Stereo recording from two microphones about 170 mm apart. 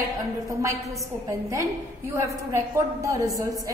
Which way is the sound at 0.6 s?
20° right (ahead or behind).